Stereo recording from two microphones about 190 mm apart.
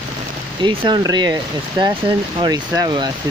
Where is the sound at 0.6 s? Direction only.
25° right (ahead or behind).